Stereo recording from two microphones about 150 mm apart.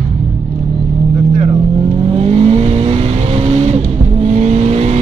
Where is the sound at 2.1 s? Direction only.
45° right (ahead or behind).